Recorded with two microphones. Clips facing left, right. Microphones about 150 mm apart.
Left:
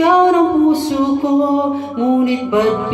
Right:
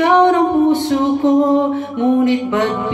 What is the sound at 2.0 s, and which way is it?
Music, 15° left (ahead or behind).